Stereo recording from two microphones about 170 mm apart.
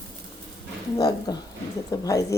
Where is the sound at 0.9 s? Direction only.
20° left (ahead or behind).